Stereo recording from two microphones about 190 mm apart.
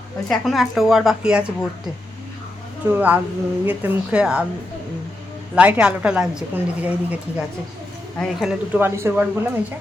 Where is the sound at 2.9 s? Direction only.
10° right (ahead or behind).